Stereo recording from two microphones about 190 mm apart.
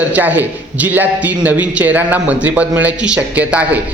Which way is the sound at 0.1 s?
10° right (ahead or behind).